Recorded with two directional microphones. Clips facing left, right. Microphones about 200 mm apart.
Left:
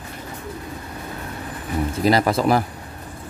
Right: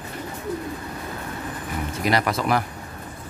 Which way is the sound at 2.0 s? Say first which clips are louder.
Left 5 dB; 30° left (ahead or behind).